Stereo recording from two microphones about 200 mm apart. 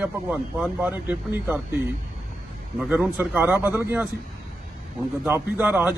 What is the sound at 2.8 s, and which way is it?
A man's voice, 10° right (ahead or behind).